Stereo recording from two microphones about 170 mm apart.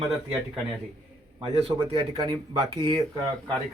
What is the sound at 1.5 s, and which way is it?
Speech, 30° right (ahead or behind).